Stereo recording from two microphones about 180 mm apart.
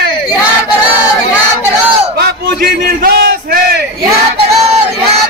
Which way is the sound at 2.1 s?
60° right (ahead or behind).